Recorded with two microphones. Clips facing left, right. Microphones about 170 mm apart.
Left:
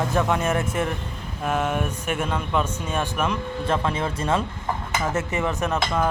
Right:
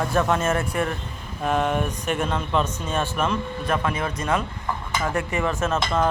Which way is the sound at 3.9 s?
25° left (ahead or behind).